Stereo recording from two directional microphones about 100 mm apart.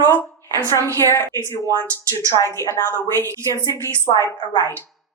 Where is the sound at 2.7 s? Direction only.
25° left (ahead or behind).